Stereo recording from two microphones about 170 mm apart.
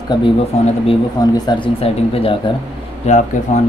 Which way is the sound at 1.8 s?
35° left (ahead or behind).